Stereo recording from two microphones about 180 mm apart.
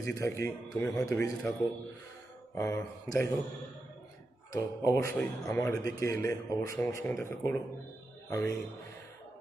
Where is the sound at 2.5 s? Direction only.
15° left (ahead or behind).